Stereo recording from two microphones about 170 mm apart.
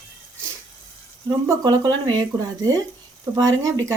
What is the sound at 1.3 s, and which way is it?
Speech, 20° right (ahead or behind).